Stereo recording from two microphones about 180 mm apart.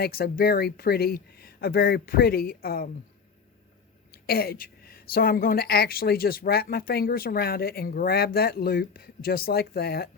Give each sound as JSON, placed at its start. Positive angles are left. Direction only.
{"t": 0.0, "sound": "a woman's voice", "side_deg": 55}
{"t": 4.1, "sound": "a woman's voice", "side_deg": 60}